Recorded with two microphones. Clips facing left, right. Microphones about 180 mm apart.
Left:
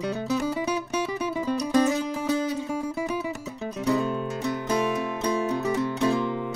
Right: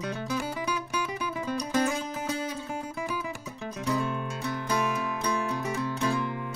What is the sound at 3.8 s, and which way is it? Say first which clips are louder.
Music: left 5 dB; 20° left (ahead or behind).